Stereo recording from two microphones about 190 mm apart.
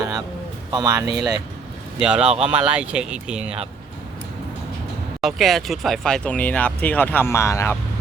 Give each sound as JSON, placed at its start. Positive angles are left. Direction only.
{"t": 0.0, "sound": "a sound", "side_deg": -20}
{"t": 0.7, "sound": "speech", "side_deg": -20}
{"t": 2.0, "sound": "speech", "side_deg": -5}
{"t": 5.2, "sound": "speech", "side_deg": 0}